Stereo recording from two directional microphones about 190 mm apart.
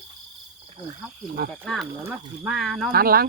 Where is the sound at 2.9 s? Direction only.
50° right (ahead or behind).